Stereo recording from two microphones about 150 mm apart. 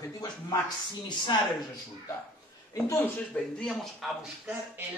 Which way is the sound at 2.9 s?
5° left (ahead or behind).